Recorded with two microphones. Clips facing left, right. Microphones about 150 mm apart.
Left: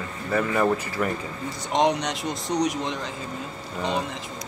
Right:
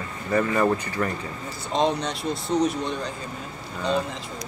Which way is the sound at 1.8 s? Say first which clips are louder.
Even; 90° left.